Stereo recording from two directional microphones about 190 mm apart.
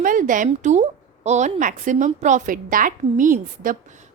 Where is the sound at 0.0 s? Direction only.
45° right (ahead or behind).